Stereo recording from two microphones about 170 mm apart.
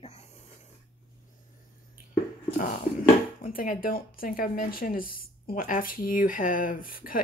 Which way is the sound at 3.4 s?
55° left (ahead or behind).